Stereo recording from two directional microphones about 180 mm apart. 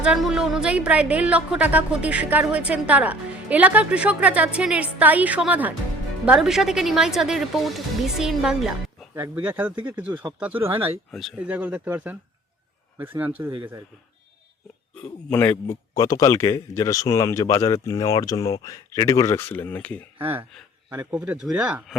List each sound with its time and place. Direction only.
0.0 s a woman's voice: 5° right (ahead or behind)
11.1 s a woman's voice: centre (ahead or behind)
15.0 s a man's voice: 10° left (ahead or behind)
20.1 s a woman's voice: 10° right (ahead or behind)